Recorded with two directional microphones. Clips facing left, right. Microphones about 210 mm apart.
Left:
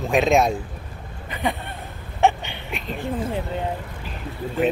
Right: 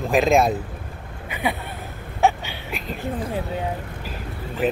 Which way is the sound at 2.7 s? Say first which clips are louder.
Left 1 dB; centre (ahead or behind).